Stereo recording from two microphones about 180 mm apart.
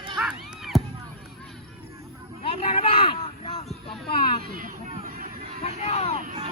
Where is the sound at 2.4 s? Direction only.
35° left (ahead or behind).